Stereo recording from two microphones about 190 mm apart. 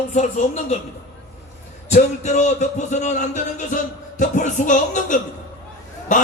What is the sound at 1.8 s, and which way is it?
Speech, 35° left (ahead or behind).